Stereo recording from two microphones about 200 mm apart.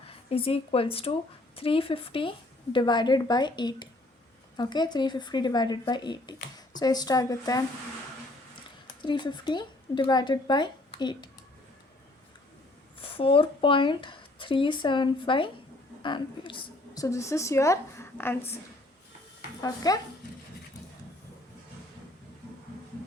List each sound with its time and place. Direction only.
0.1 s a woman's voice: 25° left (ahead or behind)
9.0 s speech: 25° left (ahead or behind)
13.0 s a woman's voice: 25° left (ahead or behind)
19.6 s speech: 20° left (ahead or behind)